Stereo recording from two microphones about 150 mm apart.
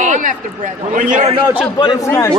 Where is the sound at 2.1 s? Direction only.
15° left (ahead or behind).